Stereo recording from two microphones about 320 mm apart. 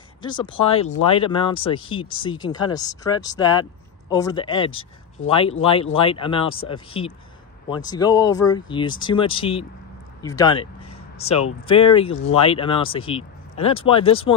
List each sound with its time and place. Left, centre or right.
0.2 s speech: centre
4.6 s speech: left
5.3 s speech: centre